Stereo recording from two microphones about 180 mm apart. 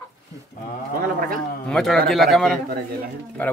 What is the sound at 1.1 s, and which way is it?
Speech, 55° right (ahead or behind).